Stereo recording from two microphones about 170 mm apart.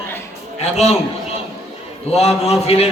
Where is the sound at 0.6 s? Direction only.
40° left (ahead or behind).